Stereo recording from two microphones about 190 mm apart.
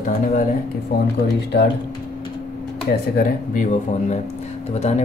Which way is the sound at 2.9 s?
50° left (ahead or behind).